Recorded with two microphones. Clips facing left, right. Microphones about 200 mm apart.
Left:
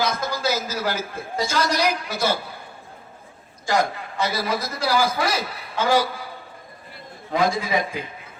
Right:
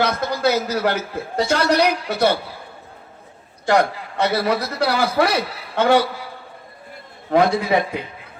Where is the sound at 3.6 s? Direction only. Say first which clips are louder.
Right 5 dB; 65° right (ahead or behind).